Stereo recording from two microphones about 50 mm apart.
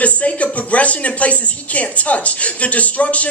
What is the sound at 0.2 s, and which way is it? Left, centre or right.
Speech, left.